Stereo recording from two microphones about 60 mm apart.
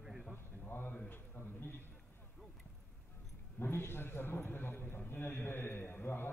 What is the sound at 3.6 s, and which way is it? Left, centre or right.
A man's voice, left.